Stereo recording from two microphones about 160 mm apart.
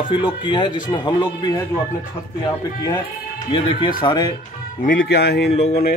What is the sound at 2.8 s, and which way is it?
Speech, 25° left (ahead or behind).